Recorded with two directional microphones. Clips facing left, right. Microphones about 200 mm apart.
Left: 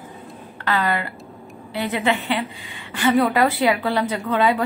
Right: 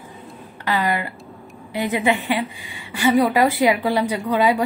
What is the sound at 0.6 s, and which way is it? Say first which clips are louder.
A woman's voice: even; 15° right (ahead or behind).